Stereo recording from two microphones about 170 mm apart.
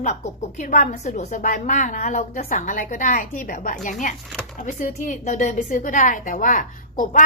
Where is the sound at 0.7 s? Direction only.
45° left (ahead or behind).